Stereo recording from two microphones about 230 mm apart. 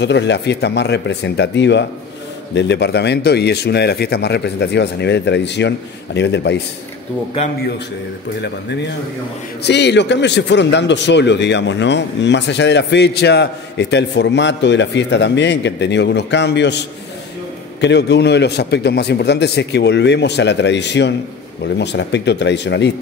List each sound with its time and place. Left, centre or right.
0.0 s a man's voice: left
8.4 s a man's voice: left